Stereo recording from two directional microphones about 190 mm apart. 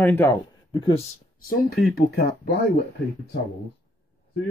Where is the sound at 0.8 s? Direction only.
25° left (ahead or behind).